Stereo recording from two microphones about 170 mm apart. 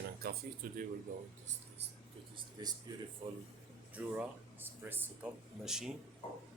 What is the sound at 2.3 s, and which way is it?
Speech, 25° right (ahead or behind).